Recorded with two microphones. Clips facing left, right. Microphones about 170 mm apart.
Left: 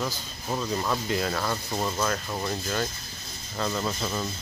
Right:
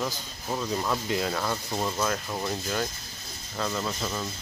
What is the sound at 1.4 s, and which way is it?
Speech, centre (ahead or behind).